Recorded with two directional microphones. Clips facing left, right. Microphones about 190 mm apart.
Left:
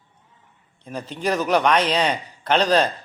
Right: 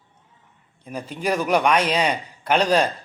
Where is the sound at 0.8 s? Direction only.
10° right (ahead or behind).